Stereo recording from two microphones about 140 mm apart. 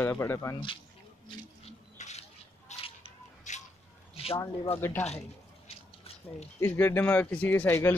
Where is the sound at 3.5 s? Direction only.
60° left (ahead or behind).